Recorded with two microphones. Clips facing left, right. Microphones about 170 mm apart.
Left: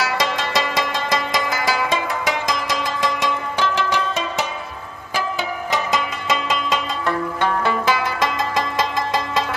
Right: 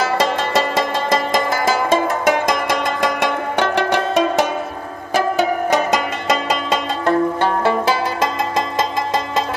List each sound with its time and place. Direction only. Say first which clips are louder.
0.0 s music: right 4 dB; 50° right (ahead or behind); by 8.8 s 25° right (ahead or behind)